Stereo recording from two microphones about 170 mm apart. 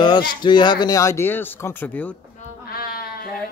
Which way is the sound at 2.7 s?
60° left (ahead or behind).